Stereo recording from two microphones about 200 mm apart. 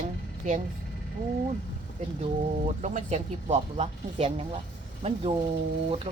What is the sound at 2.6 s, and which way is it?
Speech, 35° right (ahead or behind).